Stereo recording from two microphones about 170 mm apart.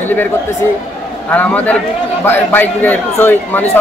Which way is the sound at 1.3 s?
10° left (ahead or behind).